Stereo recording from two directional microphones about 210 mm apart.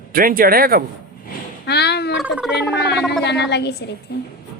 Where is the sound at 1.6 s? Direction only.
55° left (ahead or behind).